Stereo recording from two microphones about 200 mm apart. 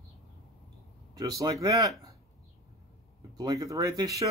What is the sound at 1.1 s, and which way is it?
Speech, 20° right (ahead or behind).